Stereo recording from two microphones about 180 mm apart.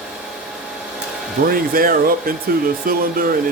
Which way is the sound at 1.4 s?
50° right (ahead or behind).